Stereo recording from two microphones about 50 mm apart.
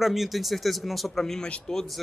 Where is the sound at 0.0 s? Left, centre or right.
Centre.